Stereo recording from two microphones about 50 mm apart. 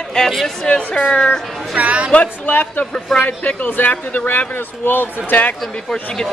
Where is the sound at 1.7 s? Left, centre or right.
Right.